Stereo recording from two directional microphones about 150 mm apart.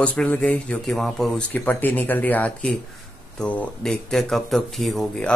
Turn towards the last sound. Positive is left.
turn(degrees=5)  # may be behind; listen again after turning